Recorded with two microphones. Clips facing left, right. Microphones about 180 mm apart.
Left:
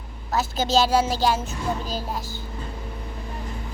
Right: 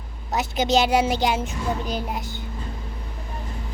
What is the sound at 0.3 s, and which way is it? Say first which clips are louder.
A woman's voice: right 2 dB; 20° right (ahead or behind).